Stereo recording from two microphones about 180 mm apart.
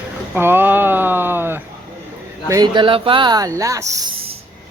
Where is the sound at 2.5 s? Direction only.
25° right (ahead or behind).